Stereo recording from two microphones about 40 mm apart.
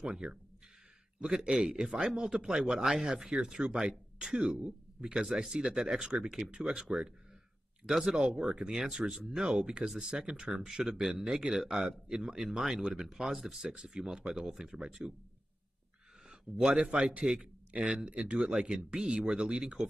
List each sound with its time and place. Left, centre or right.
0.0 s speech: centre
8.1 s speech: centre
13.0 s speech: centre
16.4 s speech: right
16.9 s a man's voice: right
17.2 s a man's voice: centre